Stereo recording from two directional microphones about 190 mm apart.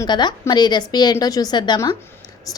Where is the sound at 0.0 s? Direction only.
20° left (ahead or behind).